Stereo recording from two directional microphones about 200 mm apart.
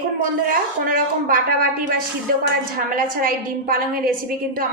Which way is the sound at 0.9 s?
45° right (ahead or behind).